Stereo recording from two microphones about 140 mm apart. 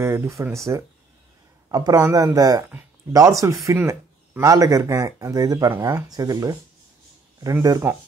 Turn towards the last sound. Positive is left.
turn(degrees=-25)  # may be behind; listen again after turning